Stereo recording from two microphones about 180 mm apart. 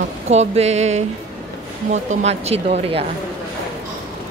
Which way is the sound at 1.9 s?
40° right (ahead or behind).